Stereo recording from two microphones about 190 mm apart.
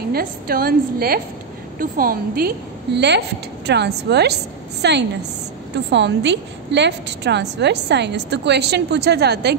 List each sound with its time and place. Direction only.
0.1 s a woman's voice: 50° right (ahead or behind)